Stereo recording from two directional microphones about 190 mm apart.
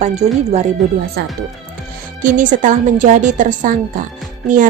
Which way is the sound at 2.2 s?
40° right (ahead or behind).